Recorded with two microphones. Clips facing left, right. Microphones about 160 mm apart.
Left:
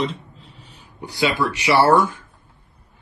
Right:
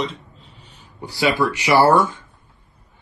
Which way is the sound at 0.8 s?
15° left (ahead or behind).